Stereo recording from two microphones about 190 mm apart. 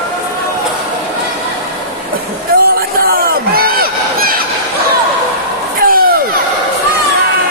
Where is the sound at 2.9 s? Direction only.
55° right (ahead or behind).